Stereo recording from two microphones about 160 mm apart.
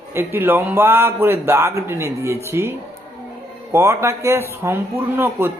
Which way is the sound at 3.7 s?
15° right (ahead or behind).